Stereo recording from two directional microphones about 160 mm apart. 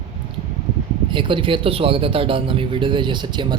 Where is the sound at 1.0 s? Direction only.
30° right (ahead or behind).